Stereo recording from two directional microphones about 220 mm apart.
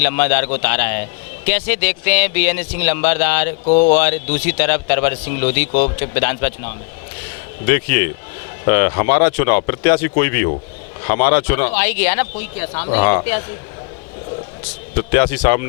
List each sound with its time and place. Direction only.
0.0 s speech: 10° left (ahead or behind)
3.7 s speech: 40° left (ahead or behind)
3.9 s speech: 10° left (ahead or behind)
7.7 s speech: 15° left (ahead or behind)
15.1 s speech: 15° left (ahead or behind)